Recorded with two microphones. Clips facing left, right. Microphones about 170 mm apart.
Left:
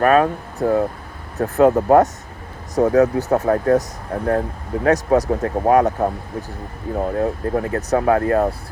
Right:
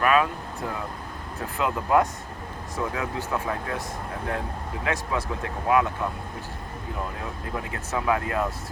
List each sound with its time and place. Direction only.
0.0 s speech: 40° left (ahead or behind)